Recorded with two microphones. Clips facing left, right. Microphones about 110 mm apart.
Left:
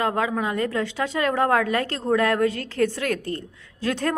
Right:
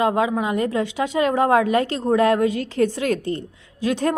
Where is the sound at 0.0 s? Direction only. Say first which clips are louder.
Right 4 dB; 15° right (ahead or behind).